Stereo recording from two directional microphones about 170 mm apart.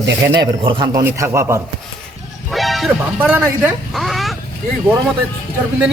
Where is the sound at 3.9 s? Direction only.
Centre (ahead or behind).